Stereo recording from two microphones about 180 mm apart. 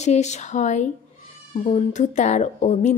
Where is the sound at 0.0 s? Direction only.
40° left (ahead or behind).